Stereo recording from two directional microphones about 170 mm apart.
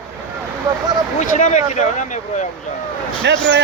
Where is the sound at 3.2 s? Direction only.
90° right.